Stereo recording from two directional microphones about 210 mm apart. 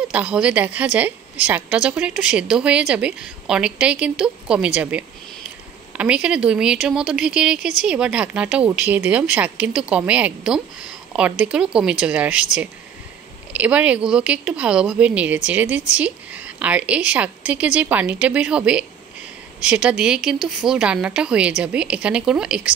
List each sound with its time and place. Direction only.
0.1 s a woman's voice: 5° right (ahead or behind)
13.5 s a woman's voice: 5° right (ahead or behind)